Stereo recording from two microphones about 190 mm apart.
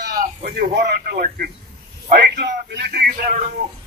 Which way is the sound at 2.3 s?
65° right (ahead or behind).